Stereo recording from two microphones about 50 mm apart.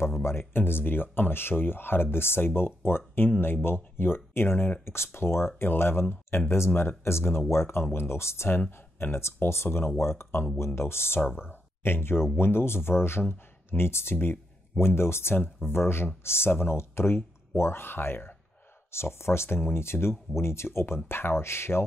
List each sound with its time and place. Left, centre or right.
0.0 s speech: left
8.5 s speech: left